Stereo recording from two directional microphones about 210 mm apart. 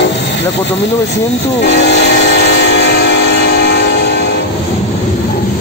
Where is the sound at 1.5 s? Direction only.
55° left (ahead or behind).